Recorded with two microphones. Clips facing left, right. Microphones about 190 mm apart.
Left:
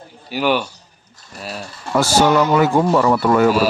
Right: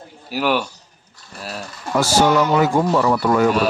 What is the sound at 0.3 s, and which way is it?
Speech, centre (ahead or behind).